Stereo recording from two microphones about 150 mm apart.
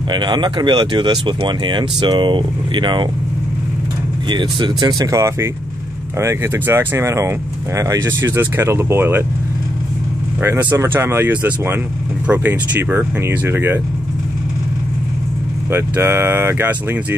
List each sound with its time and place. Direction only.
0.1 s speech: 30° right (ahead or behind)
4.3 s speech: 30° right (ahead or behind); by 9.2 s 15° right (ahead or behind)
10.4 s speech: 15° right (ahead or behind)
15.7 s speech: 15° right (ahead or behind)